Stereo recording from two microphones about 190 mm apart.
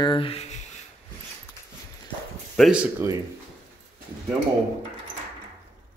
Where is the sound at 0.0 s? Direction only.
25° left (ahead or behind).